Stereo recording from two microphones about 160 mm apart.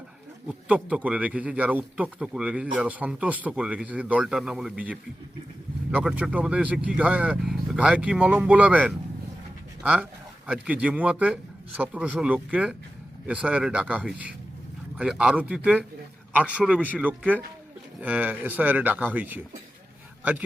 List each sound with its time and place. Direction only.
0.4 s a man's voice: 10° right (ahead or behind)